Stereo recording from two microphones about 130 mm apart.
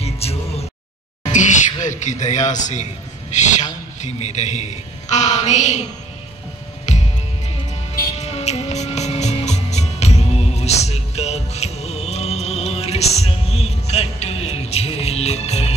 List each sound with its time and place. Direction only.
0.0 s music: 50° left (ahead or behind)
1.2 s music: 70° left (ahead or behind)
1.8 s a man's voice: 70° left (ahead or behind)
6.9 s music: 60° left (ahead or behind)
8.2 s music: 55° left (ahead or behind)